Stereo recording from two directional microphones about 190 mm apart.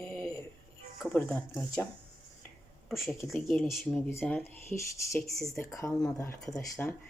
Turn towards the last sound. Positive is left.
turn(degrees=5)  # may be behind; listen again after turning